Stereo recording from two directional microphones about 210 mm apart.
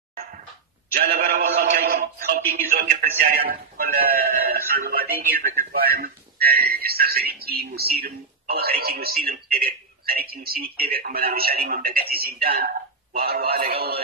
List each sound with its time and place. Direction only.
0.9 s synthetic singing: 45° right (ahead or behind)
1.4 s speech: 40° right (ahead or behind)